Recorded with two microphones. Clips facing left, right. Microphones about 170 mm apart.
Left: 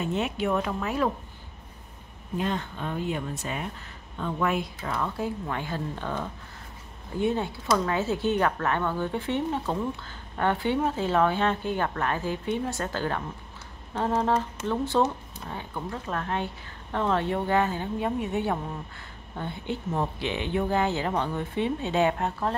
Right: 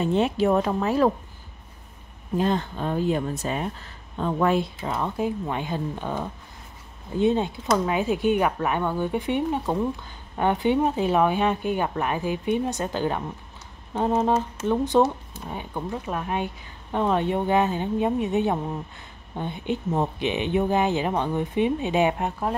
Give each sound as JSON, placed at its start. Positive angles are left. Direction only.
{"t": 0.0, "sound": "speech", "side_deg": -35}
{"t": 2.3, "sound": "speech", "side_deg": -35}